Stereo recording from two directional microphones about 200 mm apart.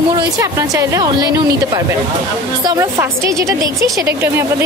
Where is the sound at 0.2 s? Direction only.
15° right (ahead or behind).